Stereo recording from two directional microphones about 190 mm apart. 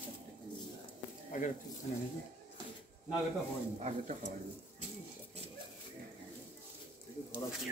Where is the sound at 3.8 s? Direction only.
35° right (ahead or behind).